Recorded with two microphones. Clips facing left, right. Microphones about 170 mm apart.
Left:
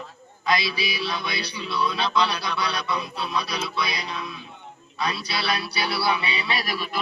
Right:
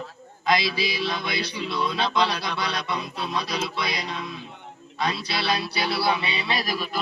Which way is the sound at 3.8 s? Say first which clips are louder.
Even; 50° right (ahead or behind).